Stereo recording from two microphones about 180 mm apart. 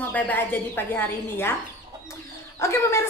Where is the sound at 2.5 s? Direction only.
15° left (ahead or behind).